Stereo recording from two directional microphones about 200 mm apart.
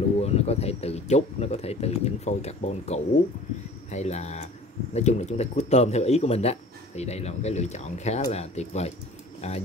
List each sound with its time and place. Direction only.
0.2 s speech: 30° left (ahead or behind)